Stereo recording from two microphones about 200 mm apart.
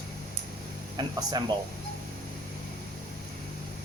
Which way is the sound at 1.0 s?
20° right (ahead or behind).